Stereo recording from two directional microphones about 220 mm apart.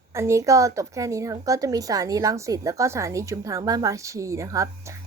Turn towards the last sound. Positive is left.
turn(degrees=-15)  # may be behind; listen again after turning